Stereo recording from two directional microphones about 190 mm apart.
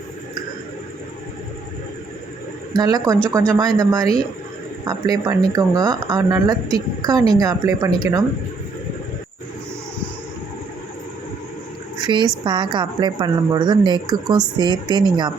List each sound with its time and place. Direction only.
2.7 s speech: 20° right (ahead or behind)
12.0 s speech: 20° right (ahead or behind)